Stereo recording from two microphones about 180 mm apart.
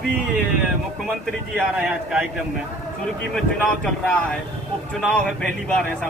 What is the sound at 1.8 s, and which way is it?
Speech, 5° right (ahead or behind).